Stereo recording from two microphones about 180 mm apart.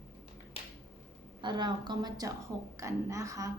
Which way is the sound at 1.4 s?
25° right (ahead or behind).